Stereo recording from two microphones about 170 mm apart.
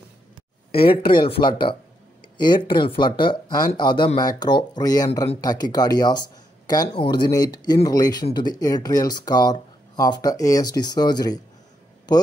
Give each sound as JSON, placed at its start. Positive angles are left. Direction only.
{"t": 0.7, "sound": "speech", "side_deg": 30}